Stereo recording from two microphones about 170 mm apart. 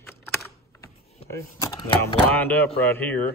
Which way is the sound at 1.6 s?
25° left (ahead or behind).